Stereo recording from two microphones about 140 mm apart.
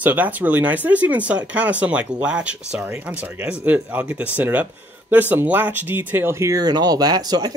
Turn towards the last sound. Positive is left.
turn(degrees=-25)  # may be behind; listen again after turning